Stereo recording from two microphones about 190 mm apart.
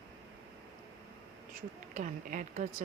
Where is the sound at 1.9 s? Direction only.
40° right (ahead or behind).